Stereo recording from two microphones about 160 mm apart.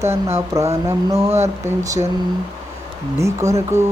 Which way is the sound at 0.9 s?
20° right (ahead or behind).